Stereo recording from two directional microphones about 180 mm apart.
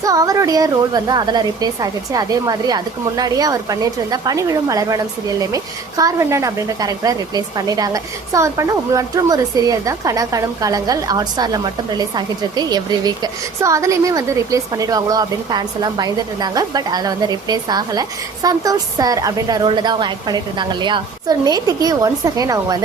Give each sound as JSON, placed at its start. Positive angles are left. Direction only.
{"t": 0.0, "sound": "a woman's voice", "side_deg": -20}